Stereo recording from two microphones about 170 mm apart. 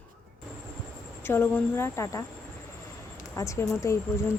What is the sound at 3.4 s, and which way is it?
Speech, 15° left (ahead or behind).